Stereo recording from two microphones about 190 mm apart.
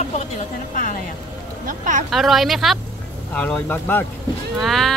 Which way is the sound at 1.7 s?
40° right (ahead or behind).